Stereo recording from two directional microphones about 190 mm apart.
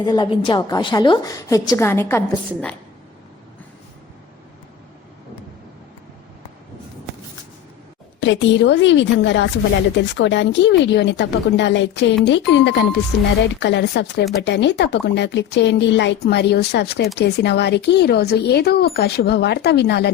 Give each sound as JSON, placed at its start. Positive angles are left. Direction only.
{"t": 0.0, "sound": "a woman's voice", "side_deg": 20}
{"t": 8.2, "sound": "a woman's voice", "side_deg": 70}